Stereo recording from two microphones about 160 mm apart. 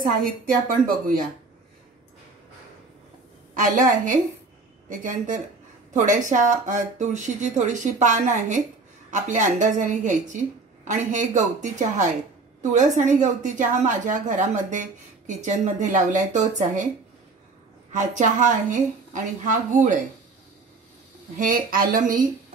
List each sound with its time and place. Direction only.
0.0 s a woman's voice: 60° right (ahead or behind)
3.5 s a woman's voice: 55° right (ahead or behind)
17.9 s a woman's voice: 50° right (ahead or behind)
21.4 s a woman's voice: 60° right (ahead or behind)